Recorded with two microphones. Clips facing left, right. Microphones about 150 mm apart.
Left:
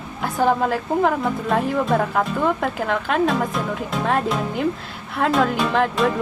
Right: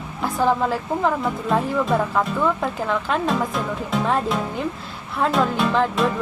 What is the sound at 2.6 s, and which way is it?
Speech, 60° left (ahead or behind).